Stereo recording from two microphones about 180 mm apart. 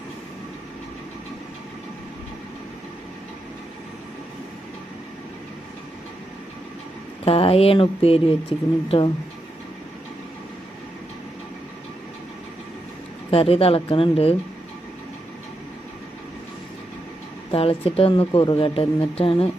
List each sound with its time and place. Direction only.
7.3 s a woman's voice: 30° left (ahead or behind)
13.3 s a woman's voice: 30° left (ahead or behind)
17.5 s a woman's voice: 30° left (ahead or behind)